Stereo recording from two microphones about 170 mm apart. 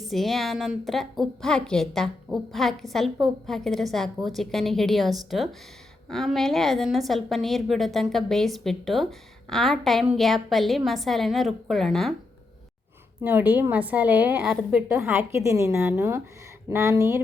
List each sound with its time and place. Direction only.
0.1 s a woman's voice: centre (ahead or behind)
13.2 s a woman's voice: 10° right (ahead or behind)